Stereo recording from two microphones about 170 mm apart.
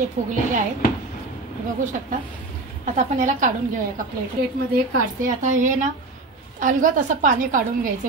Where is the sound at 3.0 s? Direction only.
45° right (ahead or behind).